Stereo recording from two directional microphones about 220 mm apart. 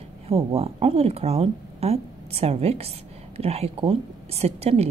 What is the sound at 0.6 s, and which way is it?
A woman's voice, 25° right (ahead or behind).